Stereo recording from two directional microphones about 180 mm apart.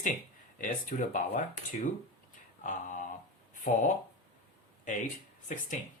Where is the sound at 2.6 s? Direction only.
45° left (ahead or behind).